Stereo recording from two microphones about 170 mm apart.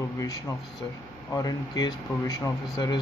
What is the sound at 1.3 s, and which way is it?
Speech, 20° left (ahead or behind).